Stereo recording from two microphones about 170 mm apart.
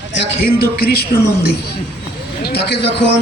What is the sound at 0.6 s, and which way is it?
Speech, 65° left (ahead or behind).